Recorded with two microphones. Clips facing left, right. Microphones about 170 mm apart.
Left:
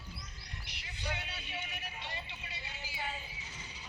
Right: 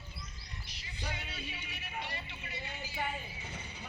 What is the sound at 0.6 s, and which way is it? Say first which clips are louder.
Music: left 2 dB; 65° left (ahead or behind).